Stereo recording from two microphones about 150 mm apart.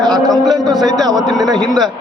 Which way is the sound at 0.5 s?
25° right (ahead or behind).